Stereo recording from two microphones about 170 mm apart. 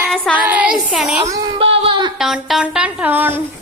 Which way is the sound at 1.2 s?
20° right (ahead or behind).